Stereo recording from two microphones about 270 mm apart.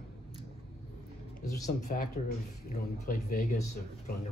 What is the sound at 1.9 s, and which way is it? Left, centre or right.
Speech, left.